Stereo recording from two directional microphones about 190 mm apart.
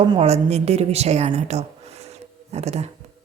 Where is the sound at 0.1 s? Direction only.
30° right (ahead or behind).